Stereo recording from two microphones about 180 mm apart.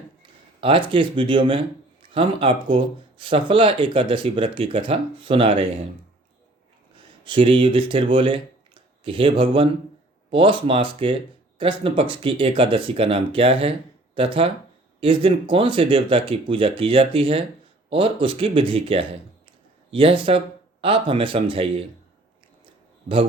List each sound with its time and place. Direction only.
0.2 s speech: 30° right (ahead or behind)
6.9 s speech: 30° right (ahead or behind)